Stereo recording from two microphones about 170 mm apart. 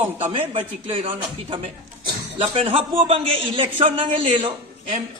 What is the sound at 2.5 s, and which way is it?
A man's voice, 35° right (ahead or behind).